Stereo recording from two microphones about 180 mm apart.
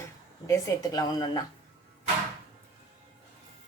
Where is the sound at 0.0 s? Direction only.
15° left (ahead or behind).